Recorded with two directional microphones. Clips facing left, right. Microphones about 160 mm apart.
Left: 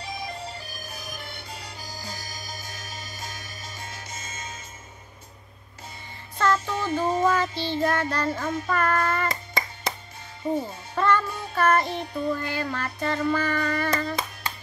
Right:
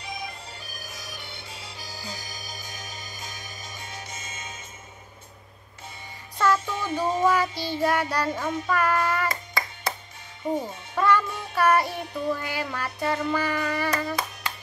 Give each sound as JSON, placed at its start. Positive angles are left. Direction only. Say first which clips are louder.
{"t": 3.8, "sound": "music", "louder": "even", "side_deg": 50}
{"t": 6.3, "sound": "child singing", "louder": "even", "side_deg": -10}
{"t": 9.5, "sound": "music", "louder": "even", "side_deg": 25}
{"t": 11.0, "sound": "music", "louder": "right 1 dB", "side_deg": -10}